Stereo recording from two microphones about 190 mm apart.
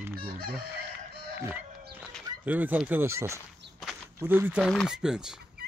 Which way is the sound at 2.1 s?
10° right (ahead or behind).